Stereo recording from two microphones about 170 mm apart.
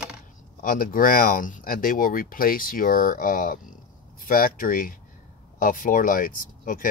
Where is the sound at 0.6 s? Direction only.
55° left (ahead or behind).